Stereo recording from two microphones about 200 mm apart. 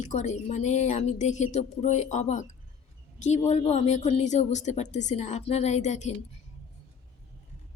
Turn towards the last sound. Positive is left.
turn(degrees=35)  # may be behind; listen again after turning